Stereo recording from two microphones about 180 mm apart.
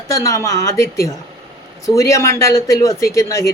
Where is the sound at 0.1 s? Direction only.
15° left (ahead or behind).